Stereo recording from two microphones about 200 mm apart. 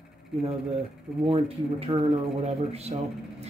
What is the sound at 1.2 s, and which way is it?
Speech, 30° right (ahead or behind).